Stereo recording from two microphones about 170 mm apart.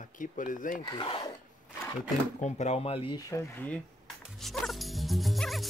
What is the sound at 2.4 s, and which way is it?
Speech, 40° left (ahead or behind).